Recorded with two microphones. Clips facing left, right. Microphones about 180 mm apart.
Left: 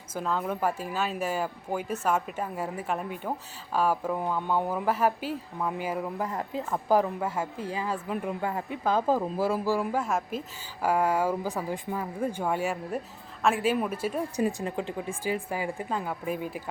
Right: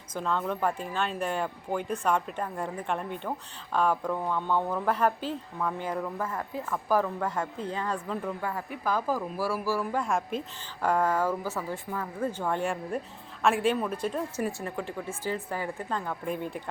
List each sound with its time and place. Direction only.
0.1 s a woman's voice: 5° left (ahead or behind)
9.9 s speech: 5° left (ahead or behind)